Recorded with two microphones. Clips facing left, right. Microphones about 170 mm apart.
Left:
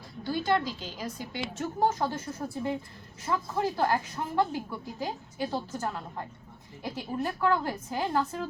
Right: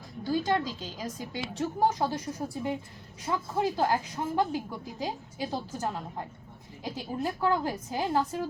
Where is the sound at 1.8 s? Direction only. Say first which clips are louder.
Even; 15° right (ahead or behind).